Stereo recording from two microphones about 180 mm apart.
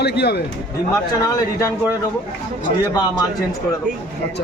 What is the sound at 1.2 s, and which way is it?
Speech, 20° left (ahead or behind).